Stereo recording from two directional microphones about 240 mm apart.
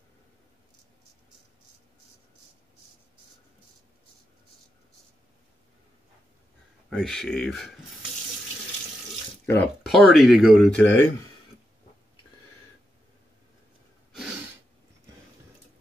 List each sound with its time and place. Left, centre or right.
6.9 s speech: centre
9.5 s speech: centre
14.1 s a sound: centre